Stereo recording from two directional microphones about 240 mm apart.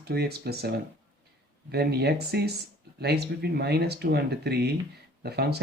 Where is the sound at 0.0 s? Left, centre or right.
Right.